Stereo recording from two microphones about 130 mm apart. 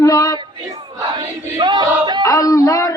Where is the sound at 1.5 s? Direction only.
35° right (ahead or behind).